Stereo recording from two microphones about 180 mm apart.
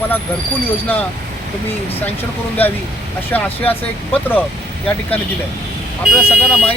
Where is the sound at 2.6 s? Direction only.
10° left (ahead or behind).